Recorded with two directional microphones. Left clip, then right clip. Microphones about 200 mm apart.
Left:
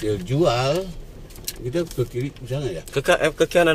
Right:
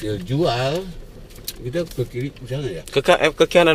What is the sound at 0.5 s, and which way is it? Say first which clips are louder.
Speech: left 1 dB; 10° left (ahead or behind).